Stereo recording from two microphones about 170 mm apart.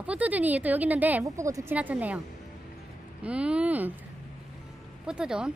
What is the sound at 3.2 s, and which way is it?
Speech, 5° right (ahead or behind).